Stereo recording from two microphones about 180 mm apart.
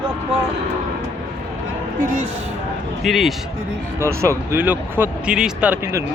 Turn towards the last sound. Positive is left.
turn(degrees=-15)  # may be behind; listen again after turning